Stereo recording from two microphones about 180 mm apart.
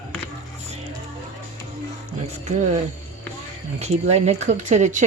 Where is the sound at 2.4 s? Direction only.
40° right (ahead or behind).